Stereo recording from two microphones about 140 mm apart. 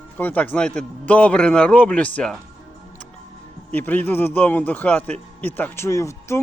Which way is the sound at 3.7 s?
15° left (ahead or behind).